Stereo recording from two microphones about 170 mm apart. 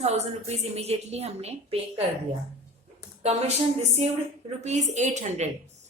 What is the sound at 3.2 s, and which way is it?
Speech, 40° right (ahead or behind).